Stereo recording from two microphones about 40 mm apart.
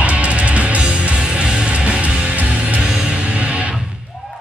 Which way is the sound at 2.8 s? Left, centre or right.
Centre.